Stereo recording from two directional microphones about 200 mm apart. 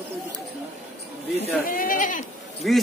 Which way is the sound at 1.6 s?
45° left (ahead or behind).